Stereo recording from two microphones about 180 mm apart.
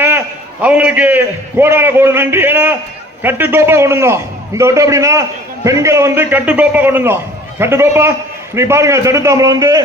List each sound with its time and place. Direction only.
0.6 s a man's voice: 10° right (ahead or behind)